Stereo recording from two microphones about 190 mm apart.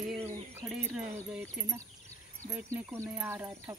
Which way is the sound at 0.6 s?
5° right (ahead or behind).